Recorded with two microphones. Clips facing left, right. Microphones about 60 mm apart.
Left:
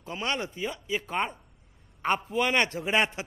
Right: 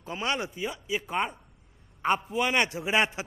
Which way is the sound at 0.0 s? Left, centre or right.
Right.